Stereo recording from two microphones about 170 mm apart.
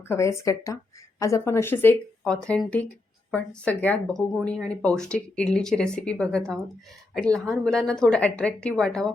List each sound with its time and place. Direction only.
0.1 s a woman's voice: 15° left (ahead or behind)